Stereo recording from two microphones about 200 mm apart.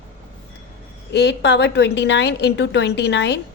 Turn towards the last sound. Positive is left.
turn(degrees=60)  # may be behind; listen again after turning